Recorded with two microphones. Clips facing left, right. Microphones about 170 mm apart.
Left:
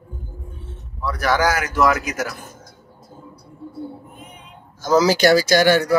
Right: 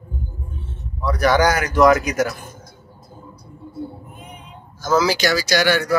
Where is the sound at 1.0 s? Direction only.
Centre (ahead or behind).